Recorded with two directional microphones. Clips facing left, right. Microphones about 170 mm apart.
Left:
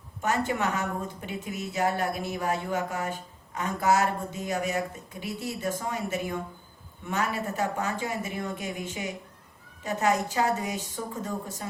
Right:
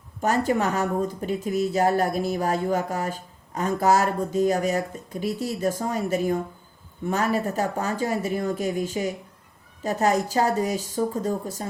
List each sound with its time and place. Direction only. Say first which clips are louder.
0.2 s speech: right 5 dB; 35° right (ahead or behind)